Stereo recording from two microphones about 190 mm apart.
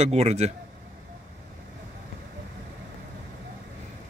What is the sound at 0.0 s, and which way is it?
Speech, 35° right (ahead or behind).